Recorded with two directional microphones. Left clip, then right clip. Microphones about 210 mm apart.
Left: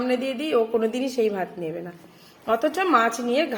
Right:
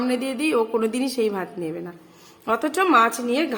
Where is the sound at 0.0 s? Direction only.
10° right (ahead or behind).